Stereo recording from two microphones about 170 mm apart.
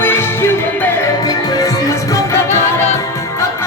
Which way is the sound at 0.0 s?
15° left (ahead or behind).